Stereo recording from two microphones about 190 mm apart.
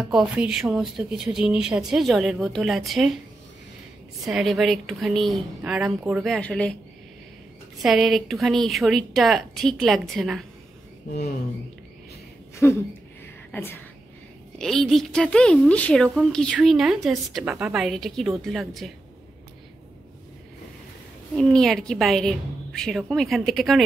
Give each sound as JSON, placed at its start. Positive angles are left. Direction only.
{"t": 0.1, "sound": "speech", "side_deg": -5}
{"t": 4.2, "sound": "speech", "side_deg": 0}
{"t": 7.8, "sound": "speech", "side_deg": 0}
{"t": 11.1, "sound": "speech", "side_deg": 55}
{"t": 12.6, "sound": "speech", "side_deg": 10}
{"t": 21.4, "sound": "speech", "side_deg": 0}